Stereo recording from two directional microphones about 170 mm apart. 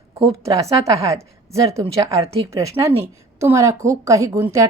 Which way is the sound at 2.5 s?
20° right (ahead or behind).